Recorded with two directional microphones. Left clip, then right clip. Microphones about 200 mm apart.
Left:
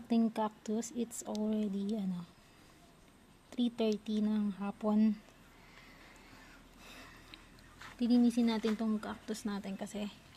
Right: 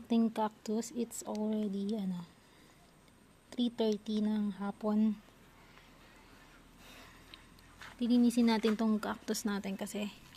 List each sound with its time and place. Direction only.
0.1 s speech: 15° right (ahead or behind)
3.5 s speech: 10° right (ahead or behind)
3.9 s speech: 15° left (ahead or behind)
4.2 s speech: 10° right (ahead or behind)
6.8 s a sound: centre (ahead or behind)
8.2 s speech: 20° right (ahead or behind)
8.8 s speech: 35° right (ahead or behind)